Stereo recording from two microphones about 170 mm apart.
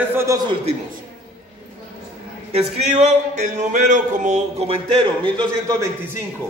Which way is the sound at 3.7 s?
50° right (ahead or behind).